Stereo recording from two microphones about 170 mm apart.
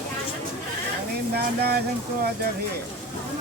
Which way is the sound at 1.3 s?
70° right (ahead or behind).